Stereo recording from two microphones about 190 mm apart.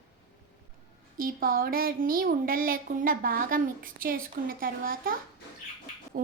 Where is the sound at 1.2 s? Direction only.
50° right (ahead or behind).